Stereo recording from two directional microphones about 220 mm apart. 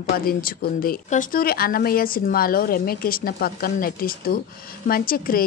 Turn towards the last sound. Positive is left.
turn(degrees=40)  # may be behind; listen again after turning